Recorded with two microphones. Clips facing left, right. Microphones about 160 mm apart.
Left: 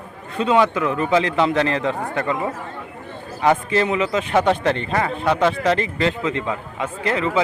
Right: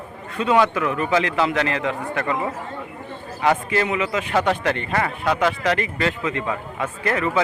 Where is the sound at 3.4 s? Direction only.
25° left (ahead or behind).